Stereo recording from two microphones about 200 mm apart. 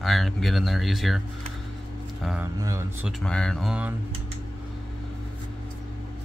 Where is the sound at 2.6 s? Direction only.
15° right (ahead or behind).